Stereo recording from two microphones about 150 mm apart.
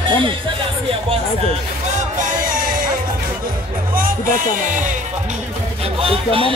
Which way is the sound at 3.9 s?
70° right (ahead or behind).